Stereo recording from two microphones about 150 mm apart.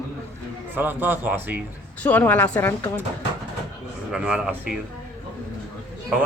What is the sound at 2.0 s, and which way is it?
Speech, 10° left (ahead or behind).